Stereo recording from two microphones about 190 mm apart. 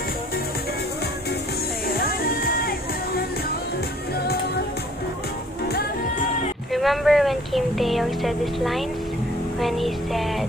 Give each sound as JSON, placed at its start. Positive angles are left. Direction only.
{"t": 1.9, "sound": "music", "side_deg": 50}
{"t": 6.7, "sound": "speech", "side_deg": 0}
{"t": 9.6, "sound": "music", "side_deg": 0}